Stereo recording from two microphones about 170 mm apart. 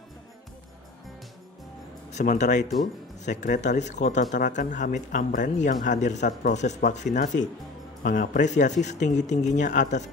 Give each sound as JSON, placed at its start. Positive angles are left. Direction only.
{"t": 2.0, "sound": "speech", "side_deg": 45}